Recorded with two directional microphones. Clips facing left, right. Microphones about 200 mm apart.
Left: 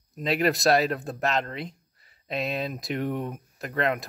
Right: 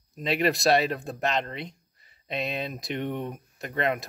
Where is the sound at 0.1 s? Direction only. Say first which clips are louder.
Left 1 dB; centre (ahead or behind).